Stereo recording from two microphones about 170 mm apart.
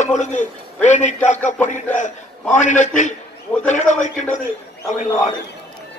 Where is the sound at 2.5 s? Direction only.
45° left (ahead or behind).